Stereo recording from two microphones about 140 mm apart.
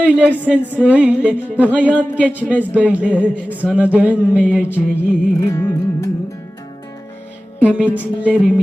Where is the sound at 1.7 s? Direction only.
10° left (ahead or behind).